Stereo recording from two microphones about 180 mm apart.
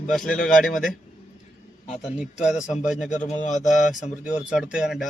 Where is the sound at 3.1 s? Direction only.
45° left (ahead or behind).